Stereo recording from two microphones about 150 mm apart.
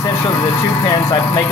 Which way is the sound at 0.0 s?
25° left (ahead or behind).